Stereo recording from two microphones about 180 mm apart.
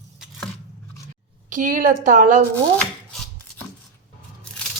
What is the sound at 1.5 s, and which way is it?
Speech, 45° right (ahead or behind).